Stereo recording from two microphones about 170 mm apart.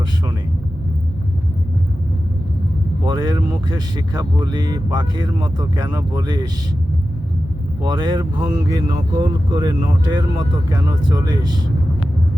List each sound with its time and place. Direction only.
3.1 s speech: 25° right (ahead or behind)
7.9 s speech: 25° right (ahead or behind)